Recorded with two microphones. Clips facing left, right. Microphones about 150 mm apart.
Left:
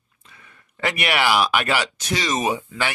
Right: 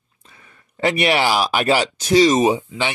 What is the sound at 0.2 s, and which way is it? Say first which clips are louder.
Speech: right 1 dB; 35° right (ahead or behind).